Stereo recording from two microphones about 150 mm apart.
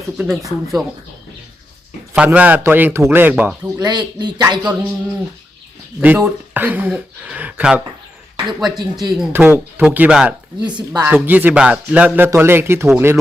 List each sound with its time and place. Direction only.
0.2 s speech: centre (ahead or behind)
2.1 s speech: 10° right (ahead or behind)
3.8 s speech: 30° right (ahead or behind)
4.6 s speech: 10° right (ahead or behind)
6.0 s speech: 10° right (ahead or behind)
8.8 s speech: 25° right (ahead or behind)
9.3 s speech: 15° right (ahead or behind)
10.8 s speech: 30° right (ahead or behind)
11.1 s speech: 10° right (ahead or behind)